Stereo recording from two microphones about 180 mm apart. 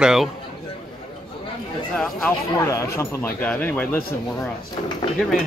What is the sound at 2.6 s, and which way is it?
Speech, 15° left (ahead or behind).